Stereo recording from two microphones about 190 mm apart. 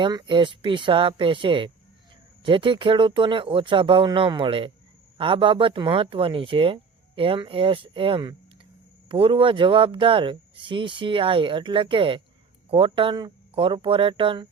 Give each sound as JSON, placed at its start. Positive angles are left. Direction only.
{"t": 0.0, "sound": "speech", "side_deg": -25}